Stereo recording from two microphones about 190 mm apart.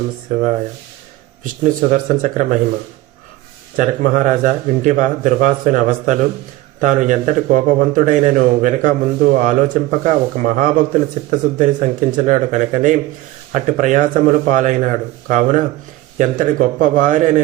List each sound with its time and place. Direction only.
1.6 s speech: 40° right (ahead or behind)
3.8 s a man's voice: 45° right (ahead or behind)